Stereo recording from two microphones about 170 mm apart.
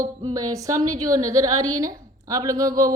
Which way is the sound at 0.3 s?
20° right (ahead or behind).